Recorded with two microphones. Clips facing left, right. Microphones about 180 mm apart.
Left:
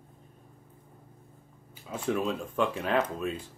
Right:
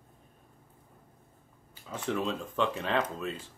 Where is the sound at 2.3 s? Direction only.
10° left (ahead or behind).